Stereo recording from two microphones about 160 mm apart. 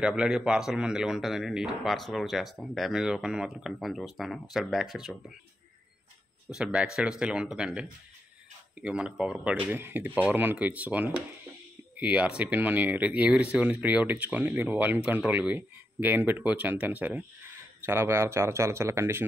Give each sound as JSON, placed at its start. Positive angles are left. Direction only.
{"t": 0.0, "sound": "speech", "side_deg": -5}
{"t": 6.5, "sound": "speech", "side_deg": -5}
{"t": 8.8, "sound": "speech", "side_deg": -5}